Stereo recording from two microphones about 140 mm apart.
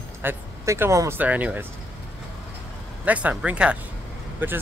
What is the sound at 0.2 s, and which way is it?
Speech, 15° right (ahead or behind).